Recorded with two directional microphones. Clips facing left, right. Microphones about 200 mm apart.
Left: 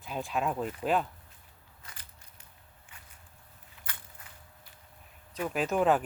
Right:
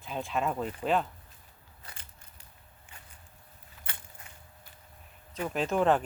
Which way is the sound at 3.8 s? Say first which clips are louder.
Right 1 dB; 40° right (ahead or behind).